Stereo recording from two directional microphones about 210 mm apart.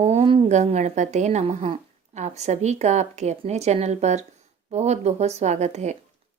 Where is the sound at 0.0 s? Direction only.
30° right (ahead or behind).